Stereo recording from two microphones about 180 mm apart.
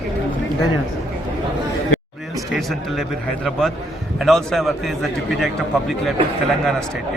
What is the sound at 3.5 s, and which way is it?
Speech, centre (ahead or behind).